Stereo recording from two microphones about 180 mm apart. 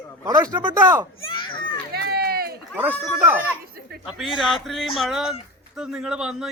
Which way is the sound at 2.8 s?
10° right (ahead or behind).